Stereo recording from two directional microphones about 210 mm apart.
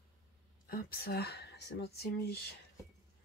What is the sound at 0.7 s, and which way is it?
Speech, 45° left (ahead or behind).